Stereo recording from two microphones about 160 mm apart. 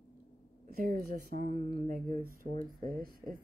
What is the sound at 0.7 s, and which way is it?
Female singing, 65° right (ahead or behind).